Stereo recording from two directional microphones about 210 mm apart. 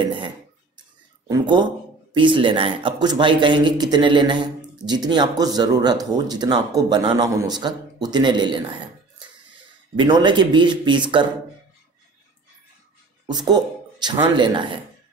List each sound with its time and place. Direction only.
0.0 s a sound: 20° right (ahead or behind)
1.3 s speech: 20° right (ahead or behind)
9.9 s speech: 20° right (ahead or behind)
13.3 s speech: 20° right (ahead or behind)